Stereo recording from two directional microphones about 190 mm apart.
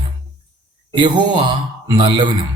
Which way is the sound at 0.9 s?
25° right (ahead or behind).